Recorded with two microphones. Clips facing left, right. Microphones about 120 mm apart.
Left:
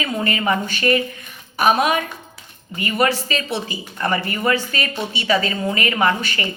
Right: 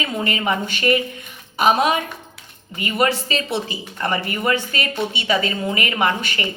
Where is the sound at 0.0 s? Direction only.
25° right (ahead or behind).